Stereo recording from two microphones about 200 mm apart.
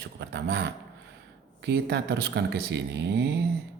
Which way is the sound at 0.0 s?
55° right (ahead or behind).